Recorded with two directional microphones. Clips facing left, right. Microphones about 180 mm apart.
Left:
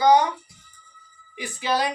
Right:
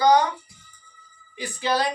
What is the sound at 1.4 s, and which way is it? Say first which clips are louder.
Speech: even; 20° left (ahead or behind).